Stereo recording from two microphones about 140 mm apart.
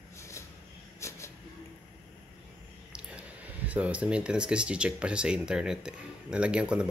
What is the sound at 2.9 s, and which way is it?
Speech, 10° right (ahead or behind).